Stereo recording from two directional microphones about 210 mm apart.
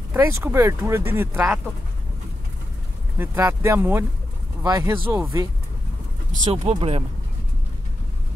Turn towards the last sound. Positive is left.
turn(degrees=-30)  # may be behind; listen again after turning